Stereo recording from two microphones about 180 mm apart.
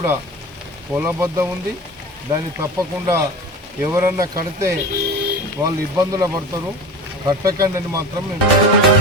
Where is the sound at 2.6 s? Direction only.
15° right (ahead or behind).